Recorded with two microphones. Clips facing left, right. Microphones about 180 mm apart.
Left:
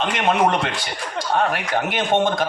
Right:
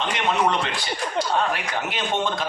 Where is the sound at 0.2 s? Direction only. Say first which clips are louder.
Left 4 dB; 50° left (ahead or behind).